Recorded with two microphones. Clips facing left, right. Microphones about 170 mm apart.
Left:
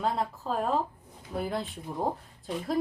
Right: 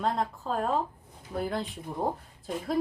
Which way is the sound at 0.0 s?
5° left (ahead or behind).